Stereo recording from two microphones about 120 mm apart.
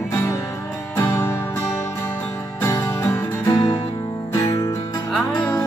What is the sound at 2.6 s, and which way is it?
Music, 20° left (ahead or behind).